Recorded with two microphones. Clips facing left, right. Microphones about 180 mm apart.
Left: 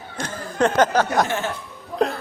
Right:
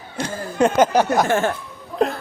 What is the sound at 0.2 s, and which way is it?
Speech, 10° right (ahead or behind).